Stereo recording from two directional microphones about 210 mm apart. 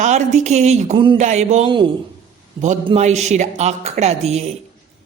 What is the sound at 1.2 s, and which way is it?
A woman's voice, 35° right (ahead or behind).